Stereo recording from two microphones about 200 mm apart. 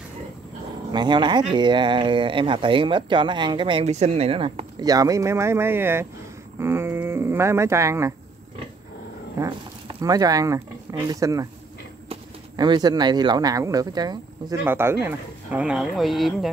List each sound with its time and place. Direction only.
0.9 s speech: 25° right (ahead or behind)
9.4 s speech: 20° right (ahead or behind); by 16.4 s centre (ahead or behind)